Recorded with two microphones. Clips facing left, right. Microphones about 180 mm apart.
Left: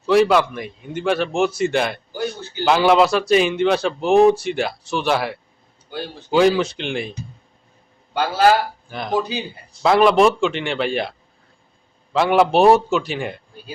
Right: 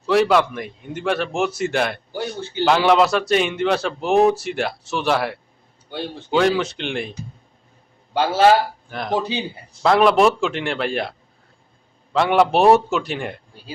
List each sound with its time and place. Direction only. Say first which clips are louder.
0.0 s a man's voice: left 1 dB; centre (ahead or behind)
8.1 s a man's voice: right 1 dB; 25° right (ahead or behind)
8.9 s a man's voice: left 2 dB; centre (ahead or behind)
12.1 s a man's voice: left 1 dB; centre (ahead or behind)